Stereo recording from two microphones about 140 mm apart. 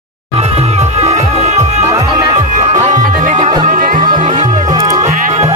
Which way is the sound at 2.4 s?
60° right (ahead or behind).